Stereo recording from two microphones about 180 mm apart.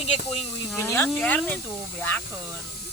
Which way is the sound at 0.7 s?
15° left (ahead or behind).